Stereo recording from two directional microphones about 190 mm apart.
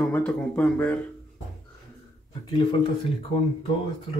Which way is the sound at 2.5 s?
25° left (ahead or behind).